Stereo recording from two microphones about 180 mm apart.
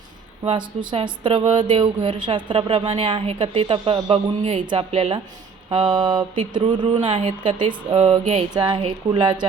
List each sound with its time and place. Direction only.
0.4 s speech: 25° right (ahead or behind)